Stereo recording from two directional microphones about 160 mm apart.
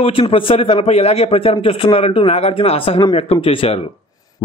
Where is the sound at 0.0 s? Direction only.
35° left (ahead or behind).